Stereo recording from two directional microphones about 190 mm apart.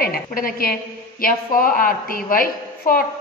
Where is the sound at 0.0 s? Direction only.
50° left (ahead or behind).